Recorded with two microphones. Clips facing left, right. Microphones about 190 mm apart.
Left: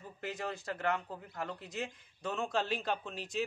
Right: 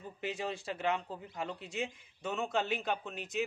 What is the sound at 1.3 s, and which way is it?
Speech, 20° right (ahead or behind).